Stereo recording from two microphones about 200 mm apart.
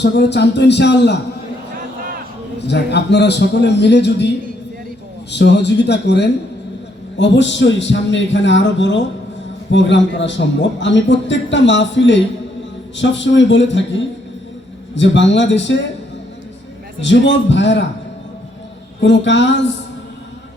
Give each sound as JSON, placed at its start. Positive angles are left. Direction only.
{"t": 0.0, "sound": "a man's voice", "side_deg": 60}
{"t": 2.6, "sound": "a man's voice", "side_deg": 60}
{"t": 5.3, "sound": "a man's voice", "side_deg": 60}
{"t": 17.0, "sound": "a man's voice", "side_deg": 65}
{"t": 18.9, "sound": "a man's voice", "side_deg": 60}